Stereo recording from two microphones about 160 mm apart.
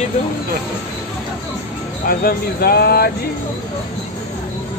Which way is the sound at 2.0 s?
65° left (ahead or behind).